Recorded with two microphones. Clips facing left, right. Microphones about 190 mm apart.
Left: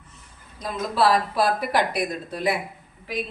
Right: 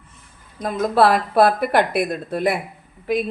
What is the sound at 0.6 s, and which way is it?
A woman's voice, 55° right (ahead or behind).